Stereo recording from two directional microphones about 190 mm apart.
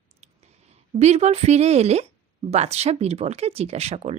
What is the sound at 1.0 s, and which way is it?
A woman's voice, 35° right (ahead or behind).